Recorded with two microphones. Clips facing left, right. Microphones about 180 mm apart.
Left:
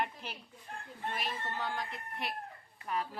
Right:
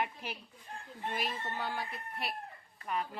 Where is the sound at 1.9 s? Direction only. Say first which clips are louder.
Even; 25° left (ahead or behind).